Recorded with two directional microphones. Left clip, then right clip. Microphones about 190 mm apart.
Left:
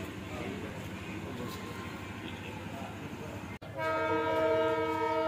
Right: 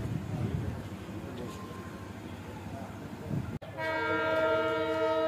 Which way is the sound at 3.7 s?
Centre (ahead or behind).